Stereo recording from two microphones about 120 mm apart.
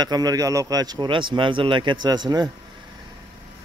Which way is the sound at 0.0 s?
35° right (ahead or behind).